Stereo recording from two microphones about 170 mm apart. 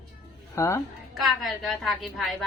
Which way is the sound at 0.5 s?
15° left (ahead or behind).